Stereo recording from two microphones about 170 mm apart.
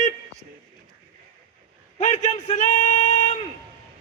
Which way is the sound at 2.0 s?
40° left (ahead or behind).